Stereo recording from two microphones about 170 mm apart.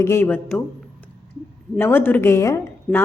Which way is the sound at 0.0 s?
15° left (ahead or behind).